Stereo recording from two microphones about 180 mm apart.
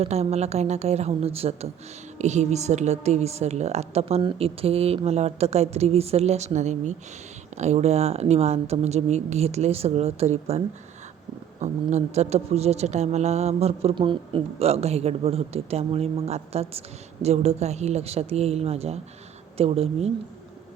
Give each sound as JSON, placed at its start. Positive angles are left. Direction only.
{"t": 0.0, "sound": "speech", "side_deg": -35}
{"t": 11.6, "sound": "speech", "side_deg": -40}